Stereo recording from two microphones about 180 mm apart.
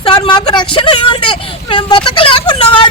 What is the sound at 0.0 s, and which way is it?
Speech, 30° left (ahead or behind).